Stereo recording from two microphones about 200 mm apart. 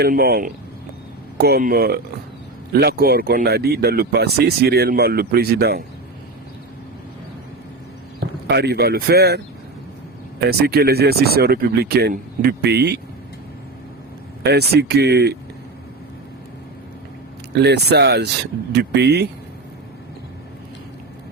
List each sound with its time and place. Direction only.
0.0 s speech: 50° right (ahead or behind)
8.4 s speech: 55° right (ahead or behind)
10.4 s speech: 50° right (ahead or behind)
14.4 s speech: 55° right (ahead or behind)
17.5 s speech: 55° right (ahead or behind)